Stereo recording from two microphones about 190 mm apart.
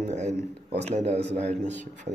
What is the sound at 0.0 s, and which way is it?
Speech, 35° right (ahead or behind).